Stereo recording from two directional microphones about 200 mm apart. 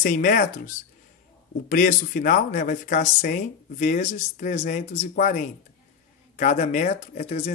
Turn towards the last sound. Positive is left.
turn(degrees=35)  # may be behind; listen again after turning